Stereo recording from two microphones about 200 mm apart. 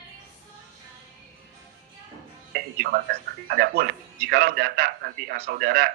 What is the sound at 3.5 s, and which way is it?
A man's voice, 50° right (ahead or behind).